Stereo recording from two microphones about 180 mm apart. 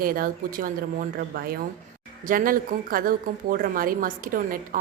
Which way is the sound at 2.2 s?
50° right (ahead or behind).